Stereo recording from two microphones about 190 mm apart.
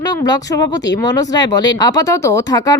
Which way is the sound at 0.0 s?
20° left (ahead or behind).